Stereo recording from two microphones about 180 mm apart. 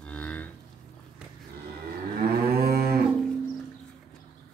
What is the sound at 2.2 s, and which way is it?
Moo, 60° right (ahead or behind).